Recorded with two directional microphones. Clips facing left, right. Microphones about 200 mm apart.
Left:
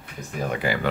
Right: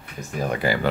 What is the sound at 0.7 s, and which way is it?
Speech, 35° right (ahead or behind).